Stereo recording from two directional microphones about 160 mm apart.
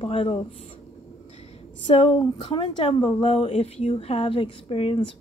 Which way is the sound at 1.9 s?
30° left (ahead or behind).